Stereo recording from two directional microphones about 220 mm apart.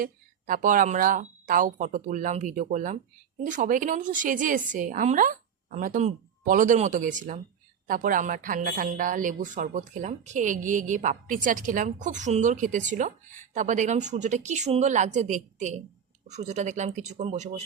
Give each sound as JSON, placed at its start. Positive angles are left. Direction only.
{"t": 0.0, "sound": "speech", "side_deg": -40}